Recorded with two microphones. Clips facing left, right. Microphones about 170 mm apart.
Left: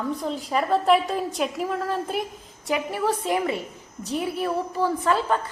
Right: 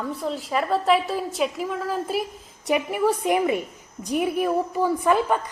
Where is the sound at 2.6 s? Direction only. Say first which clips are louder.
Right 3 dB; 15° right (ahead or behind).